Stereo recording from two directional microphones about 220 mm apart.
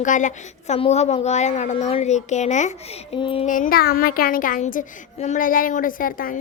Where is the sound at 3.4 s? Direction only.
35° left (ahead or behind).